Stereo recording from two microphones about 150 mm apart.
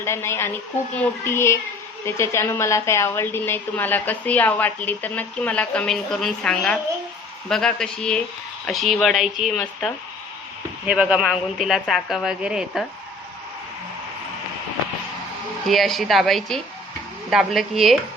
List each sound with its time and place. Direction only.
0.0 s a woman's voice: 15° left (ahead or behind); by 12.8 s 5° right (ahead or behind)
15.6 s speech: centre (ahead or behind)